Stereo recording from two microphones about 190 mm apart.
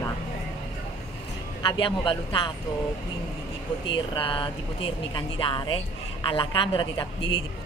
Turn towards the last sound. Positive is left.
turn(degrees=25)  # may be behind; listen again after turning